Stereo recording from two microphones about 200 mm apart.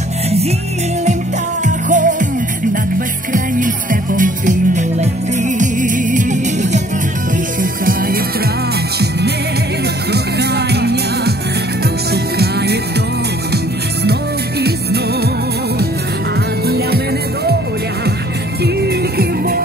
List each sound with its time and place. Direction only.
1.9 s music: 40° right (ahead or behind)
3.3 s music: 40° right (ahead or behind)
10.1 s music: 55° right (ahead or behind)
16.6 s music: 50° right (ahead or behind)
19.1 s music: 45° right (ahead or behind)